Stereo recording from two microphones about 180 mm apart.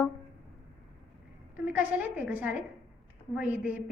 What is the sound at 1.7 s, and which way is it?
Speech, 10° right (ahead or behind).